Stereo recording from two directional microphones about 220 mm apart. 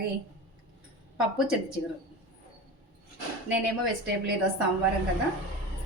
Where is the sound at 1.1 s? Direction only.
5° right (ahead or behind).